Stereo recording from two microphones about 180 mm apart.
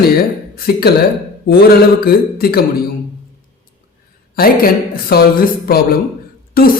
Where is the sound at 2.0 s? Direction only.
60° left (ahead or behind).